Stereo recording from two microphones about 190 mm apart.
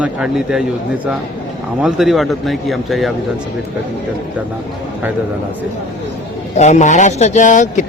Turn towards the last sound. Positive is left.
turn(degrees=40)  # may be behind; listen again after turning